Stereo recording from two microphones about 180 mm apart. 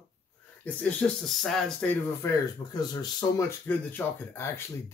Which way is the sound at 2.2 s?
20° left (ahead or behind).